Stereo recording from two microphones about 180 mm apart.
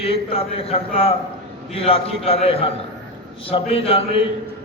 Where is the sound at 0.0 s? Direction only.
30° left (ahead or behind).